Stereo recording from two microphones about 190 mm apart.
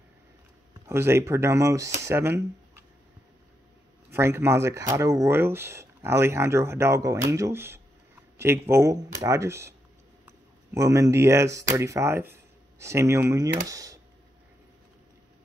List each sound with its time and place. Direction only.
0.8 s speech: 15° right (ahead or behind)
4.1 s speech: 15° right (ahead or behind)